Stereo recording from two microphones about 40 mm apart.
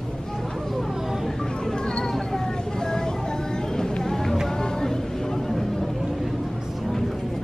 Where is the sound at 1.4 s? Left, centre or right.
Centre.